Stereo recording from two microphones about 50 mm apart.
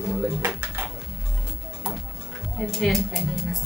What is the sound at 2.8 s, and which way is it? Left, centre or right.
Speech, centre.